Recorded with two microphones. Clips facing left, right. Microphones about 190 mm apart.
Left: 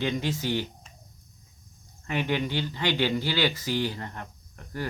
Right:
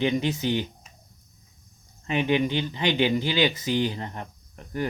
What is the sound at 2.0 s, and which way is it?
Speech, 20° right (ahead or behind).